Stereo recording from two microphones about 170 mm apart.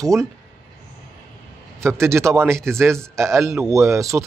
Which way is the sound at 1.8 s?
15° right (ahead or behind).